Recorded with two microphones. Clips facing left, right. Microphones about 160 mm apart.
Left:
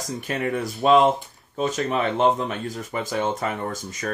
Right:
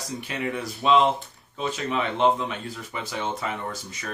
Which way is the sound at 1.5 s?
45° left (ahead or behind).